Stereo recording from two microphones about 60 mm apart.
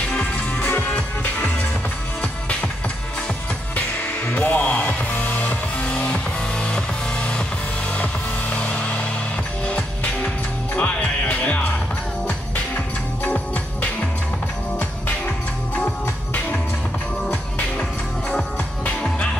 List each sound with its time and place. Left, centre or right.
0.1 s music: centre
0.6 s music: left
3.7 s music: left
18.9 s music: centre